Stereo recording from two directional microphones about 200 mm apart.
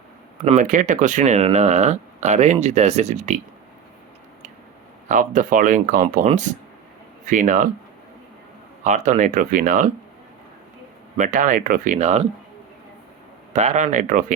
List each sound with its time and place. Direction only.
0.4 s speech: 40° right (ahead or behind)
5.0 s speech: 40° right (ahead or behind)
8.8 s speech: 35° right (ahead or behind)
11.2 s speech: 40° right (ahead or behind)
13.5 s speech: 35° right (ahead or behind)